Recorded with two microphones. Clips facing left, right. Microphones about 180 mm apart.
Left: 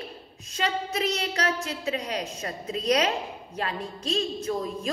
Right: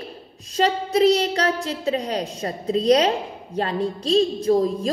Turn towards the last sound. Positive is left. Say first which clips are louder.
# right 10 dB
turn(degrees=-35)  # may be behind; listen again after turning